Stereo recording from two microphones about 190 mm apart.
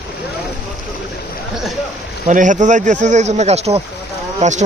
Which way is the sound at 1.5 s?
Centre (ahead or behind).